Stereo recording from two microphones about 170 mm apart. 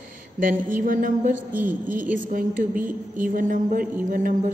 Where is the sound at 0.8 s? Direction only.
55° right (ahead or behind).